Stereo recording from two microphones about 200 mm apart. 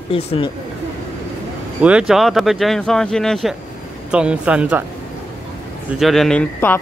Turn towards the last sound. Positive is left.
turn(degrees=10)  # may be behind; listen again after turning